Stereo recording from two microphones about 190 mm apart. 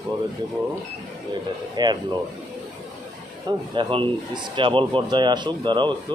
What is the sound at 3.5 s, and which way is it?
Speech, 20° right (ahead or behind).